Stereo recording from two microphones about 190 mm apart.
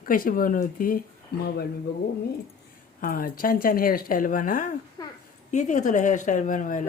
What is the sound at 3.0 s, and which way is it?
Speech, 50° left (ahead or behind).